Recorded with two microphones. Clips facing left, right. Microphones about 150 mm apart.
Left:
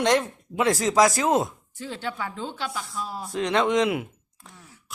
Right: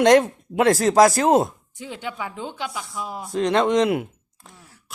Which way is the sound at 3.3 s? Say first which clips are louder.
Right 3 dB; 45° right (ahead or behind).